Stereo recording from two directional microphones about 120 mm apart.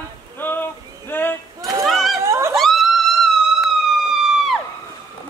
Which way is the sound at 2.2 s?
25° right (ahead or behind).